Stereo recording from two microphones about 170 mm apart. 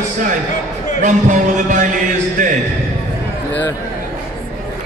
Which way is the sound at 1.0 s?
50° right (ahead or behind).